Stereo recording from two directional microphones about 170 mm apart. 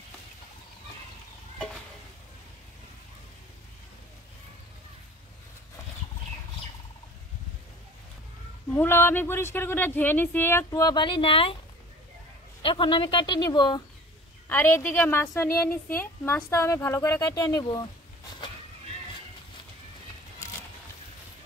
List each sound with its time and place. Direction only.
8.7 s a woman's voice: 15° left (ahead or behind); by 11.5 s 30° left (ahead or behind)
12.6 s a woman's voice: 30° left (ahead or behind)
14.5 s a woman's voice: 10° left (ahead or behind)